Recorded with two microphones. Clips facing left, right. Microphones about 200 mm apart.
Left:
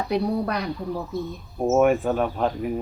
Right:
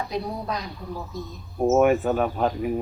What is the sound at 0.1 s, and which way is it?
Speech, 65° left (ahead or behind).